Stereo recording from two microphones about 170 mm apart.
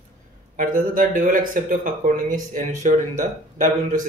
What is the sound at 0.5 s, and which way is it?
Speech, 55° right (ahead or behind).